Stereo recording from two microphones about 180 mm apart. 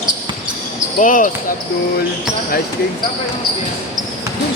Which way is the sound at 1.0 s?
50° left (ahead or behind).